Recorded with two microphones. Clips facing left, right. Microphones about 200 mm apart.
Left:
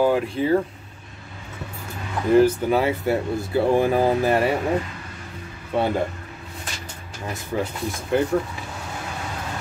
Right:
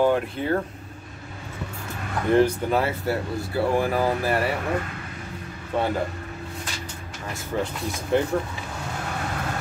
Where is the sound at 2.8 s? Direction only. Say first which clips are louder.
Left 4 dB; 20° left (ahead or behind).